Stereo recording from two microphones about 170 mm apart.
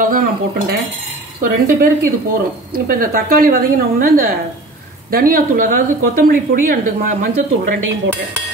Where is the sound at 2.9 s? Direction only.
55° right (ahead or behind).